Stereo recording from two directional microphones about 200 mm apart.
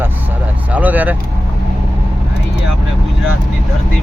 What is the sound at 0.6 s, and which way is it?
Vehicle, 10° right (ahead or behind).